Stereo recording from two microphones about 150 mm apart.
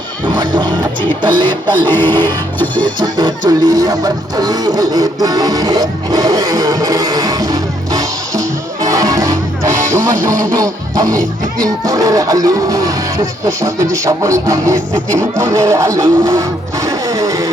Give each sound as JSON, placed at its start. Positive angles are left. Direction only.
{"t": 0.3, "sound": "music", "side_deg": -30}
{"t": 1.9, "sound": "music", "side_deg": 15}
{"t": 2.8, "sound": "music", "side_deg": -30}